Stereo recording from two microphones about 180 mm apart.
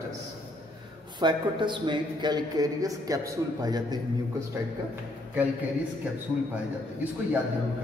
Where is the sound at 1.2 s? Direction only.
25° right (ahead or behind).